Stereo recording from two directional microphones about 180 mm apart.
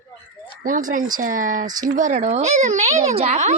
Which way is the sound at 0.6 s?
45° right (ahead or behind).